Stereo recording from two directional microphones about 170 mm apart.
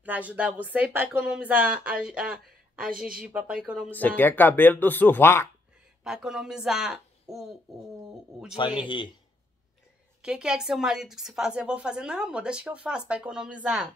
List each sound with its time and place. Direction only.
0.0 s speech: 10° right (ahead or behind)
4.2 s speech: 10° left (ahead or behind)
6.0 s a woman's voice: 5° right (ahead or behind)
8.5 s speech: 25° left (ahead or behind)
10.2 s a woman's voice: 5° right (ahead or behind)